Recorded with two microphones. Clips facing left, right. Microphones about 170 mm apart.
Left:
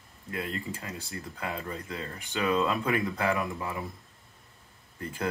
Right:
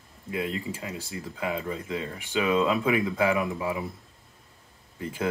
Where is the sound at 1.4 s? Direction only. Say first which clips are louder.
Right 6 dB; 15° right (ahead or behind).